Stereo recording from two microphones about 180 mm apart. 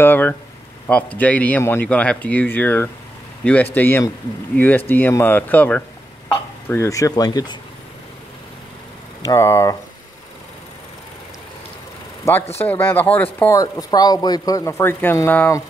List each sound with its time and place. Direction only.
0.0 s speech: 10° left (ahead or behind)
9.2 s speech: 20° left (ahead or behind)
12.2 s speech: 15° left (ahead or behind)